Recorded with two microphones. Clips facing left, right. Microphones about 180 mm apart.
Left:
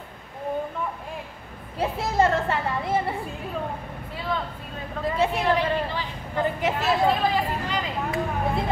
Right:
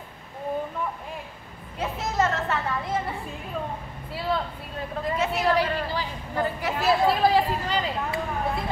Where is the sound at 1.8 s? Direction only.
30° left (ahead or behind).